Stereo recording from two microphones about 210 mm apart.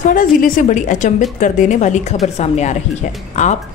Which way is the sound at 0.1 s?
40° left (ahead or behind).